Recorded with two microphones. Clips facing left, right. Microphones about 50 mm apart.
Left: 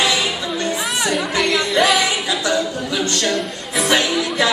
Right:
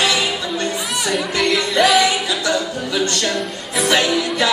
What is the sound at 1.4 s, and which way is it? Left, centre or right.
Music, centre.